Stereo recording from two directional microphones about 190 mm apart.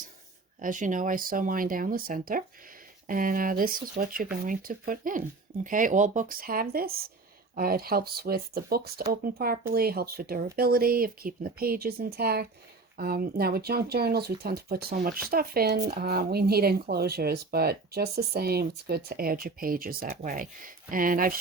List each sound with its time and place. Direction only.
0.6 s speech: 45° right (ahead or behind)